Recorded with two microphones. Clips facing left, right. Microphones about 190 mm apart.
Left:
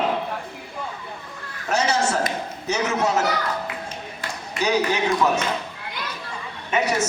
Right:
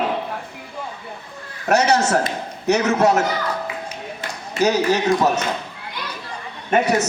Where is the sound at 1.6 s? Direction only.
70° right (ahead or behind).